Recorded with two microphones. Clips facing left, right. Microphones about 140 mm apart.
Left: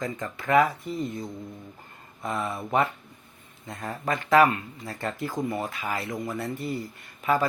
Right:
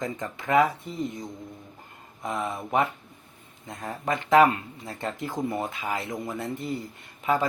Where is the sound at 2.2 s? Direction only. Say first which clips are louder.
Even; 15° right (ahead or behind).